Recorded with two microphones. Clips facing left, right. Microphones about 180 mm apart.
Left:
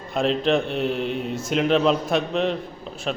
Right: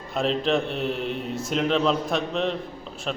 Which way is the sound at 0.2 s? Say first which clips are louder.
Left 2 dB; centre (ahead or behind).